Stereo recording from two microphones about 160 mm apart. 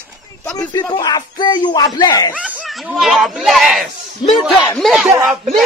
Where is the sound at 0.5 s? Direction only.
25° left (ahead or behind).